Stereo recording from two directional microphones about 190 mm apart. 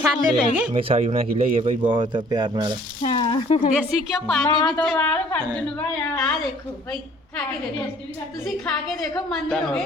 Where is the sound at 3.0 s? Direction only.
25° left (ahead or behind).